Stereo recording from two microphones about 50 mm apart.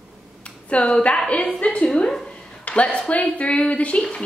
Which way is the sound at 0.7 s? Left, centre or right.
Left.